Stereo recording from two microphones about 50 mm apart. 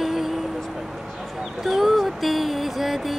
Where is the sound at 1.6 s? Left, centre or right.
Centre.